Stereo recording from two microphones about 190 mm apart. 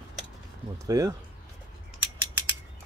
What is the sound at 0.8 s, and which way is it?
Speech, 20° right (ahead or behind).